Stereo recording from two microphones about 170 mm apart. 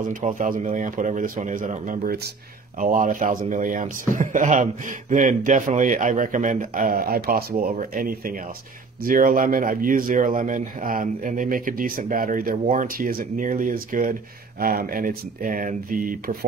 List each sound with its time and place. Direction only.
0.1 s a man's voice: 50° right (ahead or behind)